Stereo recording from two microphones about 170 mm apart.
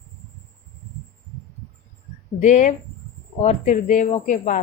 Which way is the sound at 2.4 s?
50° left (ahead or behind).